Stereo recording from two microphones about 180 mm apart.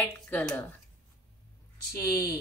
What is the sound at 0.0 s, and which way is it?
Speech, 10° left (ahead or behind).